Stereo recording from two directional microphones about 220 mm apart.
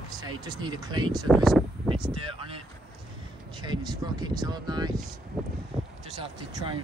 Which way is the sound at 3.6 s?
20° right (ahead or behind).